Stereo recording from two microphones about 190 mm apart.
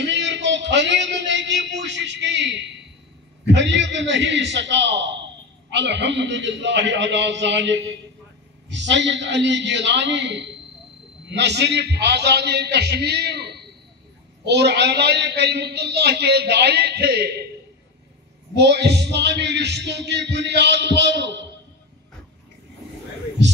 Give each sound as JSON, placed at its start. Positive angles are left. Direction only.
{"t": 0.0, "sound": "a man's voice", "side_deg": -70}
{"t": 18.6, "sound": "a man's voice", "side_deg": -60}